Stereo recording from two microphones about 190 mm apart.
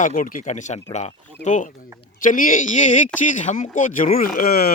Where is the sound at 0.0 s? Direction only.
45° left (ahead or behind).